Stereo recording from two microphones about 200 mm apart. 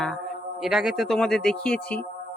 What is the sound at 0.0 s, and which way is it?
A man's voice, centre (ahead or behind).